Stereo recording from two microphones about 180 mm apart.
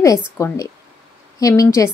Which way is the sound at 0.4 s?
20° left (ahead or behind).